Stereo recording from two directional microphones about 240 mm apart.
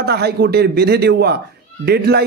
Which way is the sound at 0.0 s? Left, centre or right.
Right.